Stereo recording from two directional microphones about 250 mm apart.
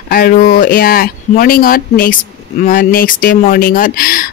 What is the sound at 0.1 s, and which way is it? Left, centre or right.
Speech, left.